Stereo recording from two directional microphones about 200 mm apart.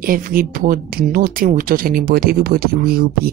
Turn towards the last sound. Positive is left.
turn(degrees=-50)  # may be behind; listen again after turning